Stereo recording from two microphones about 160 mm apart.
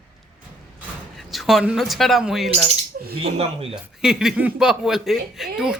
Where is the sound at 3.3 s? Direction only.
40° right (ahead or behind).